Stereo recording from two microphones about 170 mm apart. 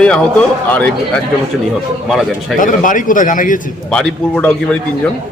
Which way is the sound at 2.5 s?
50° left (ahead or behind).